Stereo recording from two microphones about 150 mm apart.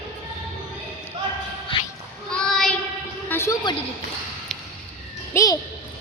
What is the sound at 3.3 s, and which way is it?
Speech, 15° left (ahead or behind).